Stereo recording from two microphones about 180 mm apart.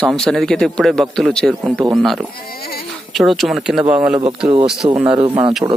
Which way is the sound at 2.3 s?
55° left (ahead or behind).